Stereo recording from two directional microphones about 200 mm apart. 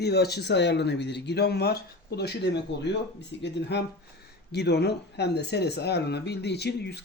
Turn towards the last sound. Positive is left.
turn(degrees=55)  # may be behind; listen again after turning